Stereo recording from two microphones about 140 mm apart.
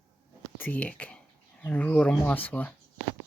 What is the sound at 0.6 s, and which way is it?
Speech, 10° left (ahead or behind).